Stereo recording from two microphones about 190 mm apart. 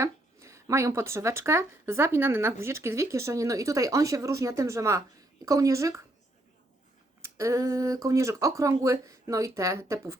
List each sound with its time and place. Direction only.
0.0 s speech: 15° right (ahead or behind)
7.2 s speech: 15° right (ahead or behind)